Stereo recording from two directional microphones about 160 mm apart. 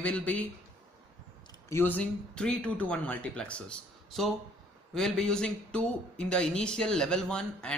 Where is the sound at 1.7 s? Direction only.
15° left (ahead or behind).